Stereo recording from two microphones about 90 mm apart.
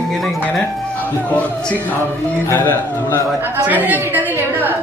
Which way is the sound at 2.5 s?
25° left (ahead or behind).